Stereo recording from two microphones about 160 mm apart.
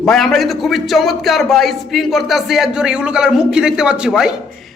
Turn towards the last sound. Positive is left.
turn(degrees=-5)  # may be behind; listen again after turning